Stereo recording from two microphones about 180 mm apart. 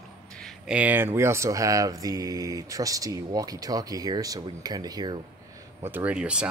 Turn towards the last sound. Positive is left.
turn(degrees=-5)  # may be behind; listen again after turning